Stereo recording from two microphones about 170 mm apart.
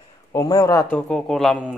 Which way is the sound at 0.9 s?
5° left (ahead or behind).